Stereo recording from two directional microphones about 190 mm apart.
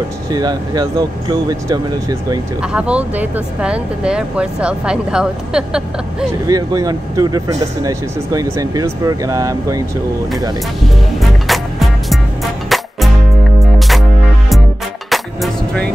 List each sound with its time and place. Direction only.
0.3 s speech: 20° right (ahead or behind)
2.7 s speech: 5° right (ahead or behind)
6.4 s speech: 20° right (ahead or behind)
11.1 s music: centre (ahead or behind)
15.0 s music: centre (ahead or behind)